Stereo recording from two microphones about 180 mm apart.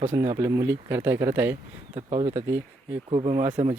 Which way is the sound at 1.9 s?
35° right (ahead or behind).